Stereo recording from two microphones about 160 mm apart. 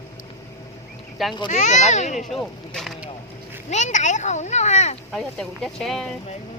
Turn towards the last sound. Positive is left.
turn(degrees=0)  # may be behind; listen again after turning